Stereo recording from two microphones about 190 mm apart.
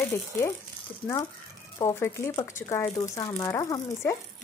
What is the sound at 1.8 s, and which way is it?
Speech, 15° left (ahead or behind).